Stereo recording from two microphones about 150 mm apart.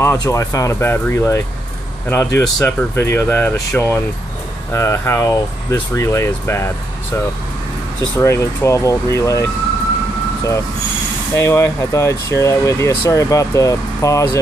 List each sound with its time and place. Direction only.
0.0 s speech: 20° left (ahead or behind)
8.2 s speech: 20° left (ahead or behind)
11.3 s speech: 20° left (ahead or behind)